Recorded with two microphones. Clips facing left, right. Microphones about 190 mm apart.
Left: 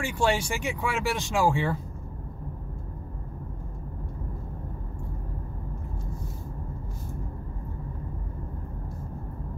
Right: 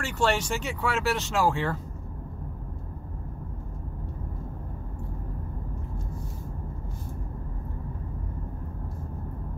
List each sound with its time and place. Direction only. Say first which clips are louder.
0.0 s speech: even; 10° left (ahead or behind)